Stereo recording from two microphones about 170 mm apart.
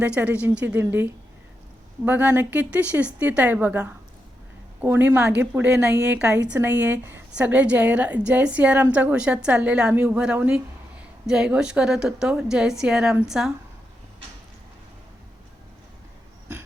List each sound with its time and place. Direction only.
0.0 s a woman's voice: 10° right (ahead or behind)